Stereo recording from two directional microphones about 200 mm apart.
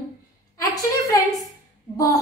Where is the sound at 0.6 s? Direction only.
15° left (ahead or behind).